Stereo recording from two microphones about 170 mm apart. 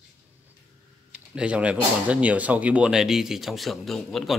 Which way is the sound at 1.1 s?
5° right (ahead or behind).